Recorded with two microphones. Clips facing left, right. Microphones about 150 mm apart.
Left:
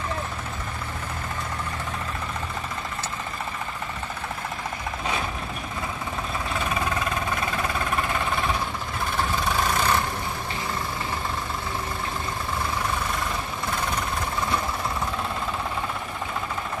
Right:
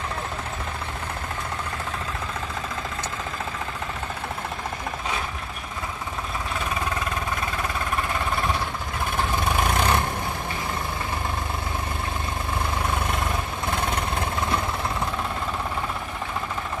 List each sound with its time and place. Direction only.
9.8 s vehicle: 20° right (ahead or behind)